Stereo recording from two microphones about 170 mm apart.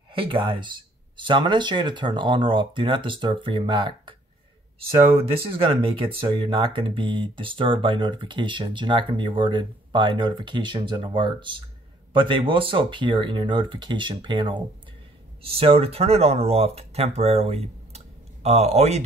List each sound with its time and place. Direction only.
0.1 s speech: 30° right (ahead or behind)
5.6 s speech: 30° right (ahead or behind)